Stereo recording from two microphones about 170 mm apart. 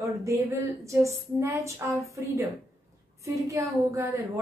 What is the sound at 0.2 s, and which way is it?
Speech, 20° right (ahead or behind).